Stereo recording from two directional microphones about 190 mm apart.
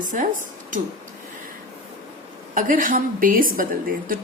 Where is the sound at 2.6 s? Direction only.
45° right (ahead or behind).